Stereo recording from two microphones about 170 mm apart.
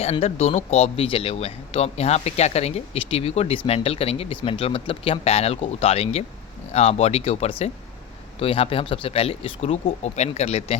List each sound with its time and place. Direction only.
0.0 s speech: 40° left (ahead or behind)